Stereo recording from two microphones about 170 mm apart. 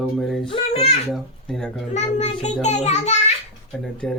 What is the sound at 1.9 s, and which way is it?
A child's voice, 40° left (ahead or behind).